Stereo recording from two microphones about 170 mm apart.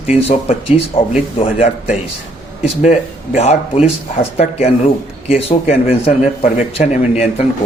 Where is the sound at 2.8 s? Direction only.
40° left (ahead or behind).